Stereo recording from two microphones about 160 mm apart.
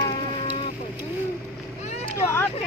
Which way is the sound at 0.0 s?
35° left (ahead or behind).